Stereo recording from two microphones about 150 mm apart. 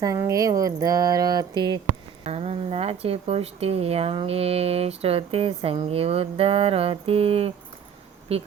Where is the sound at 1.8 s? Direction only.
45° right (ahead or behind).